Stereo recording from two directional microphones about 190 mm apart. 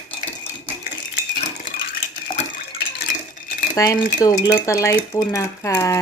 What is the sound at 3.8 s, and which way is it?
Speech, 20° left (ahead or behind).